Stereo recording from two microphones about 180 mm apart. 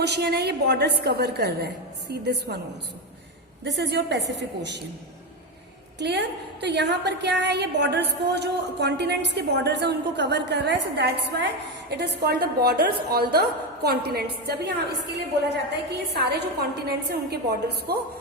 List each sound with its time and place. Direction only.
0.0 s a woman's voice: 65° right (ahead or behind)
3.6 s a woman's voice: 70° right (ahead or behind)
6.0 s a woman's voice: 70° right (ahead or behind)
15.9 s a woman's voice: 65° right (ahead or behind)